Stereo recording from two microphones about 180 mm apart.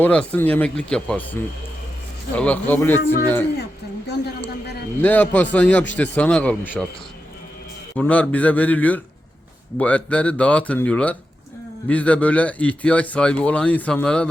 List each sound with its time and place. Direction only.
0.0 s a man's voice: 10° left (ahead or behind)
3.6 s speech: 70° left (ahead or behind)
5.0 s a man's voice: 10° left (ahead or behind)
7.9 s a man's voice: 10° left (ahead or behind)